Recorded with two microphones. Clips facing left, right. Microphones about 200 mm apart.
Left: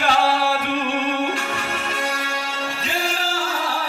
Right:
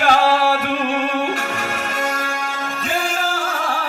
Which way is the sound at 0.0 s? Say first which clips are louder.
Right 4 dB; 45° right (ahead or behind).